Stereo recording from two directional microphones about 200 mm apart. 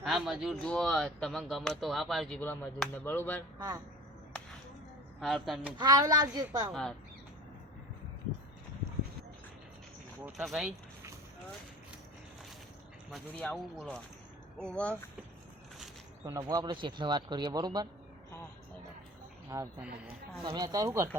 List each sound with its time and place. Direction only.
0.0 s speech: centre (ahead or behind)
5.2 s speech: centre (ahead or behind)
5.8 s speech: 20° right (ahead or behind)
10.2 s speech: centre (ahead or behind)
13.1 s speech: 5° left (ahead or behind)
16.2 s speech: 20° right (ahead or behind)
19.5 s speech: 15° right (ahead or behind)